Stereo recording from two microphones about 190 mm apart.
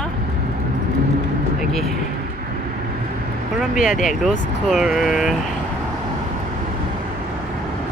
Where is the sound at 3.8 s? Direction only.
45° left (ahead or behind).